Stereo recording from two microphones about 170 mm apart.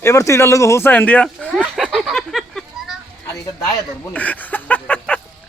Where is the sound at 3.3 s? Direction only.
20° left (ahead or behind).